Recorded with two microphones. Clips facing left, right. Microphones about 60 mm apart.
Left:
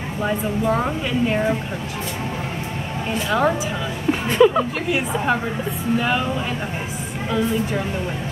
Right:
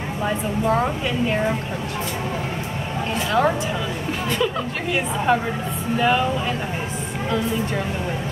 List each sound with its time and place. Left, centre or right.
3.3 s a woman's voice: centre
4.3 s speech: centre
4.9 s a woman's voice: centre